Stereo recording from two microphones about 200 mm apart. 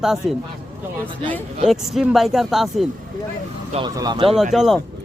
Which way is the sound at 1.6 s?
Centre (ahead or behind).